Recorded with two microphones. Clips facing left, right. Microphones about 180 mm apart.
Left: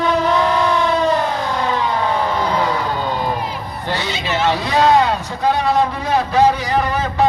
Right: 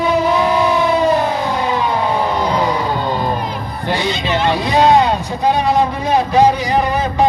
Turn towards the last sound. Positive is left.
turn(degrees=-15)  # may be behind; listen again after turning